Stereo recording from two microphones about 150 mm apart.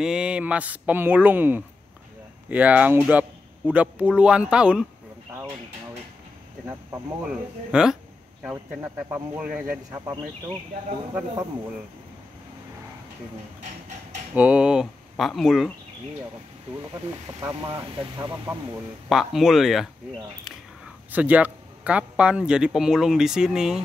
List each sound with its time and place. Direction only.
0.0 s a man's voice: 5° right (ahead or behind)
6.6 s a man's voice: 15° right (ahead or behind)
14.3 s speech: 10° right (ahead or behind)
17.4 s speech: 20° right (ahead or behind)
19.0 s speech: centre (ahead or behind)
21.1 s speech: 10° right (ahead or behind)